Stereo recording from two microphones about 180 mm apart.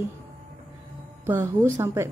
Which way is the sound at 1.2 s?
15° right (ahead or behind).